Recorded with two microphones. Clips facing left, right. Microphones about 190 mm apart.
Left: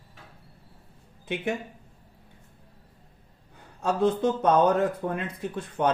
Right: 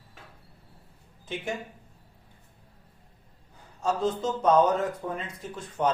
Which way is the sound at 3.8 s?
60° left (ahead or behind).